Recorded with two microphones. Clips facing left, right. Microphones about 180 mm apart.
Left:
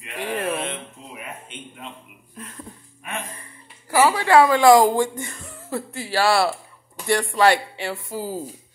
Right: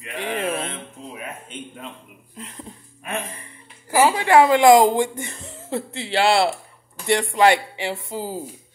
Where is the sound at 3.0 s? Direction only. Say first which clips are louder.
Right 3 dB; 40° right (ahead or behind).